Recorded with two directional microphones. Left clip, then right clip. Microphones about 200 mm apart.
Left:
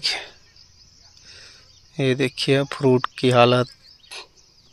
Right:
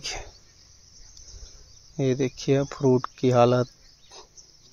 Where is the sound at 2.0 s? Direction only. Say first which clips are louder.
Left 4 dB; centre (ahead or behind).